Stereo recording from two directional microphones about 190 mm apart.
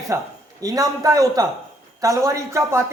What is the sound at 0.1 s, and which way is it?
Speech, 15° right (ahead or behind).